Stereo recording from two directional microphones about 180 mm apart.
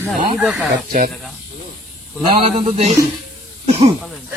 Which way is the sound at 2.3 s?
35° right (ahead or behind).